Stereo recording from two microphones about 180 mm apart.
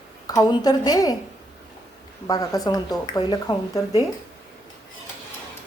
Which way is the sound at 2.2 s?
20° left (ahead or behind).